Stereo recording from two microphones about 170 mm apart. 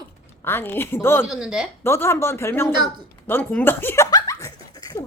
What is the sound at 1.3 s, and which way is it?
Speech, 5° right (ahead or behind).